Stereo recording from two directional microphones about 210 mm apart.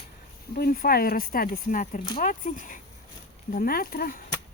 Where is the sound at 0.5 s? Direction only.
45° left (ahead or behind).